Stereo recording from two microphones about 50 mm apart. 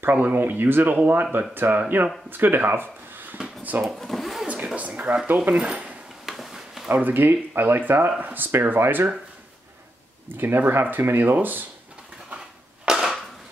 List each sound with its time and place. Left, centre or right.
0.0 s speech: right
3.8 s vehicle: centre
4.7 s speech: right
6.2 s a sound: centre
6.9 s speech: right
10.2 s speech: right
12.8 s a sound: centre